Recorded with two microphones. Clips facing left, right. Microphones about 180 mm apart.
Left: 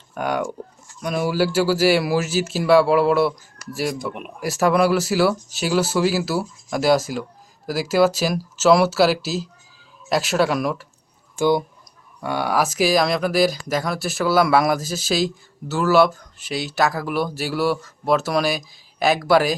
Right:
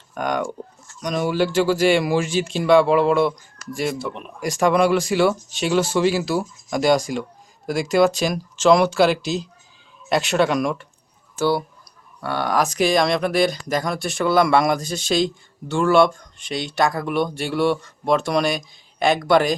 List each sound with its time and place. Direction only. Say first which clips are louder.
0.1 s speech: even; 10° left (ahead or behind)
11.3 s speech: left 2 dB; 15° left (ahead or behind)